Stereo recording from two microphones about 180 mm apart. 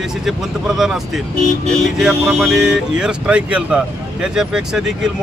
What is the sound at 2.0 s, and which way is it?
Speech, centre (ahead or behind).